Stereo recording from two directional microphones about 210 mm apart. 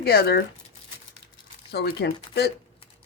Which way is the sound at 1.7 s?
50° left (ahead or behind).